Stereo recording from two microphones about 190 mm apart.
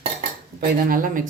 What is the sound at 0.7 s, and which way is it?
Speech, 45° right (ahead or behind).